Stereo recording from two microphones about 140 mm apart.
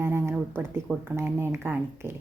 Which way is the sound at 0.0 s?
15° right (ahead or behind).